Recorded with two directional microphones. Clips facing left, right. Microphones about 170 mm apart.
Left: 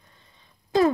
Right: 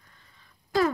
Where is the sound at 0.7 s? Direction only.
20° left (ahead or behind).